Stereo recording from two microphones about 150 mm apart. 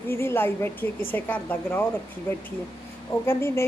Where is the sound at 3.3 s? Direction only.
15° left (ahead or behind).